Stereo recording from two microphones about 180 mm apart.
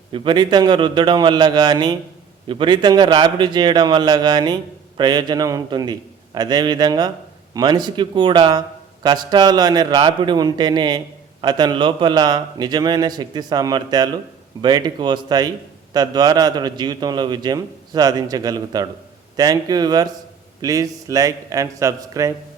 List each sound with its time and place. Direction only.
0.1 s a man's voice: 25° right (ahead or behind)